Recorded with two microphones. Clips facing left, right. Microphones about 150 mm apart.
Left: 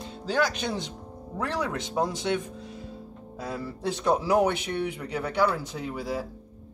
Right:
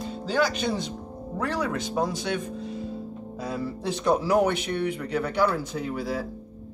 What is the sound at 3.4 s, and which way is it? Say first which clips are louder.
Speech: right 1 dB; 15° right (ahead or behind).